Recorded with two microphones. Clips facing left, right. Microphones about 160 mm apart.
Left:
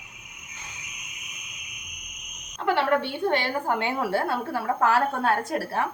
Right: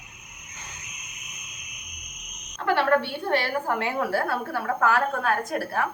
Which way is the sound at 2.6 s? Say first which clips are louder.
Right 1 dB; 20° left (ahead or behind).